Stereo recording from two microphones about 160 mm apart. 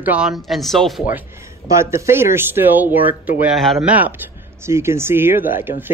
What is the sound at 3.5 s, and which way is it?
Speech, centre (ahead or behind).